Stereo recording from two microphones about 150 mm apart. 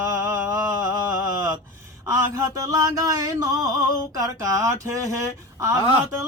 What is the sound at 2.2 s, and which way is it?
Mantra, 20° right (ahead or behind).